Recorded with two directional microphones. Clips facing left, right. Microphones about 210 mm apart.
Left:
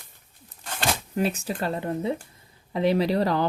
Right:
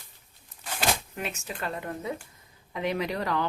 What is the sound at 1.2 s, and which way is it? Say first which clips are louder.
Speech: left 8 dB; 35° left (ahead or behind).